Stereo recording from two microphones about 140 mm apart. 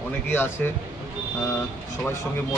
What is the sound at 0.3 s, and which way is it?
Speech, 15° left (ahead or behind).